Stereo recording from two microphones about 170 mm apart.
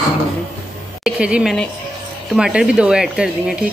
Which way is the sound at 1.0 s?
5° right (ahead or behind).